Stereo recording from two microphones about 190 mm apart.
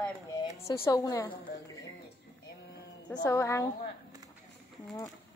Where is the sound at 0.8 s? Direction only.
20° left (ahead or behind).